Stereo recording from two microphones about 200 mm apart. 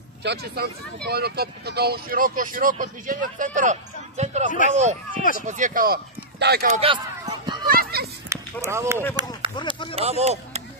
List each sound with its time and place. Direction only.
0.2 s speech: 55° right (ahead or behind); by 4.5 s 35° right (ahead or behind)
5.1 s speech: 45° left (ahead or behind)
5.5 s speech: 40° right (ahead or behind)
6.4 s speech: 55° right (ahead or behind)
6.8 s a sound: 25° right (ahead or behind)
7.6 s a sound: 45° right (ahead or behind)
8.3 s speech: 15° right (ahead or behind)
9.6 s speech: 25° left (ahead or behind)
9.9 s speech: 30° right (ahead or behind)